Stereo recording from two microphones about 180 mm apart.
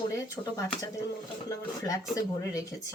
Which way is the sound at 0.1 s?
15° left (ahead or behind).